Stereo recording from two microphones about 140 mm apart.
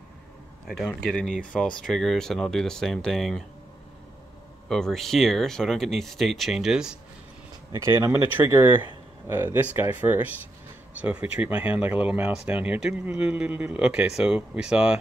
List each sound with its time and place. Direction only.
0.7 s speech: 5° left (ahead or behind)
4.6 s speech: 5° left (ahead or behind)
7.7 s speech: 20° right (ahead or behind)